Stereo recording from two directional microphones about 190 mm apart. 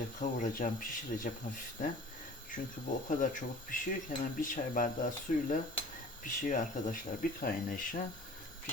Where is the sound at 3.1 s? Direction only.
45° left (ahead or behind).